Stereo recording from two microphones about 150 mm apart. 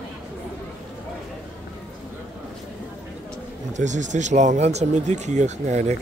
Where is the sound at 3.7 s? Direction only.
55° right (ahead or behind).